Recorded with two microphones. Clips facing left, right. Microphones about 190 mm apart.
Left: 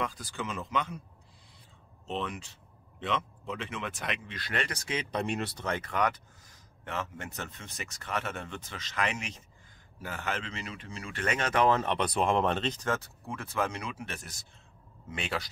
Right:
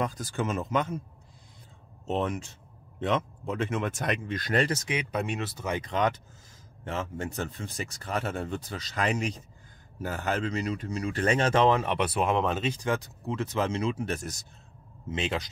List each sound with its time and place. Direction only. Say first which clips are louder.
0.0 s speech: right 5 dB; 45° right (ahead or behind)
2.0 s speech: right 6 dB; 45° right (ahead or behind)
4.8 s speech: right 2 dB; 15° right (ahead or behind)
5.2 s speech: even; centre (ahead or behind); by 11.7 s 30° right (ahead or behind)
11.7 s speech: right 2 dB; 10° right (ahead or behind); by 14.0 s 25° right (ahead or behind)
14.0 s speech: right 9 dB; 40° right (ahead or behind)
15.0 s speech: right 5 dB; 20° right (ahead or behind)